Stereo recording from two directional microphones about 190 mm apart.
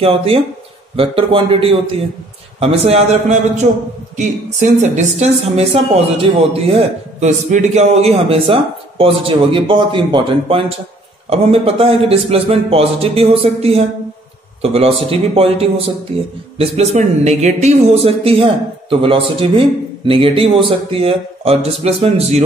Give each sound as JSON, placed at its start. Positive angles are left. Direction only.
{"t": 0.0, "sound": "a man's voice", "side_deg": -30}